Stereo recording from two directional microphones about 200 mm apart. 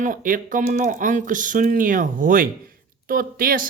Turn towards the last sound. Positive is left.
turn(degrees=-45)  # may be behind; listen again after turning